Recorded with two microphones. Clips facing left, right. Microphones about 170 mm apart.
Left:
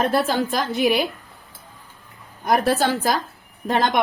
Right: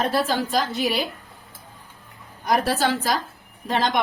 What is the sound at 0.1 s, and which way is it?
Speech, 50° left (ahead or behind).